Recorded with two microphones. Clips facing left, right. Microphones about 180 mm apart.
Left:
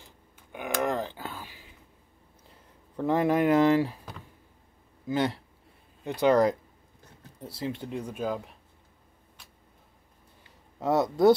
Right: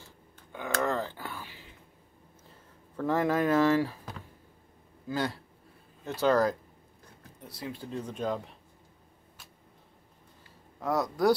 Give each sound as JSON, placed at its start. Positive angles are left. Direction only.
{"t": 0.4, "sound": "a sound", "side_deg": 15}
{"t": 3.0, "sound": "speech", "side_deg": 15}
{"t": 5.0, "sound": "speech", "side_deg": 20}
{"t": 7.3, "sound": "speech", "side_deg": 25}
{"t": 7.8, "sound": "speech", "side_deg": 15}
{"t": 10.8, "sound": "speech", "side_deg": 25}